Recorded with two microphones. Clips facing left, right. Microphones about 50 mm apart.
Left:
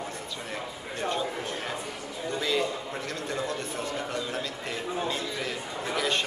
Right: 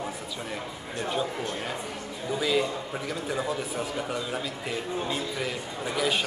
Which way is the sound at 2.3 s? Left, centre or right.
Centre.